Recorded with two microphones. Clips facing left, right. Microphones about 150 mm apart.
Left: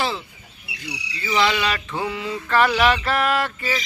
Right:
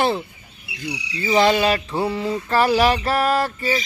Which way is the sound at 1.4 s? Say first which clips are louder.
Right 4 dB; 45° right (ahead or behind).